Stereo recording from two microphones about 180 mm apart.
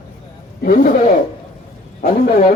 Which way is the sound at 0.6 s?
50° left (ahead or behind).